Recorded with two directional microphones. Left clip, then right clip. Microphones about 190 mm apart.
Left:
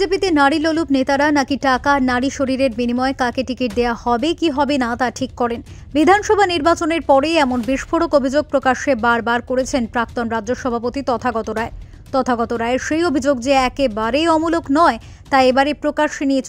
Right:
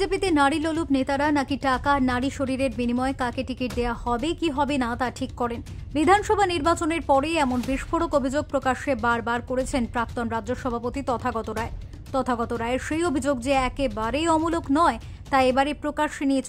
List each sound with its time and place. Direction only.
0.0 s a woman's voice: 25° left (ahead or behind)